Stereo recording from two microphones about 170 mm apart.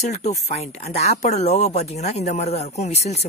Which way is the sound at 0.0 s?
40° left (ahead or behind).